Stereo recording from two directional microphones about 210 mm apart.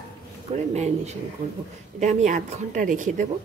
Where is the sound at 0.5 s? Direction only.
30° right (ahead or behind).